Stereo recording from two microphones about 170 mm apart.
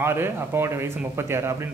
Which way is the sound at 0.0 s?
15° right (ahead or behind).